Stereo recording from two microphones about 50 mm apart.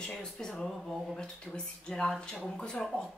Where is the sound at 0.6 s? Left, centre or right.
Centre.